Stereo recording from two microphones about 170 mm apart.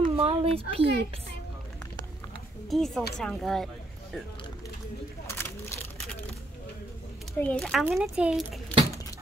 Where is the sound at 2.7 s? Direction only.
Centre (ahead or behind).